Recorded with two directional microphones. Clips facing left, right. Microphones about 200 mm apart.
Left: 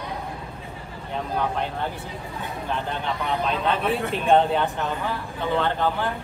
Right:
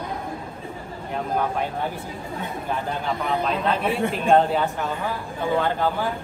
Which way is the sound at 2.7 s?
5° right (ahead or behind).